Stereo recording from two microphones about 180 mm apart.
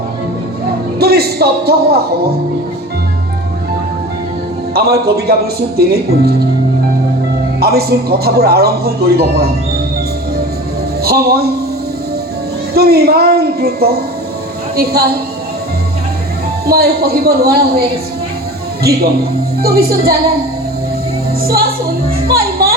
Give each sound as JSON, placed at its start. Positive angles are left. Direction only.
{"t": 0.9, "sound": "a man's voice", "side_deg": -60}
{"t": 4.7, "sound": "a woman's voice", "side_deg": -60}
{"t": 7.6, "sound": "a woman's voice", "side_deg": -60}
{"t": 11.0, "sound": "a woman's voice", "side_deg": -60}
{"t": 12.7, "sound": "a woman's voice", "side_deg": -60}
{"t": 16.6, "sound": "a woman's voice", "side_deg": -60}
{"t": 18.8, "sound": "a woman's voice", "side_deg": -60}
{"t": 21.4, "sound": "a woman's voice", "side_deg": -55}
{"t": 22.3, "sound": "music", "side_deg": -55}